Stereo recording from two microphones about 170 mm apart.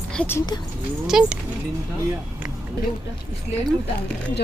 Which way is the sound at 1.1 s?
5° right (ahead or behind).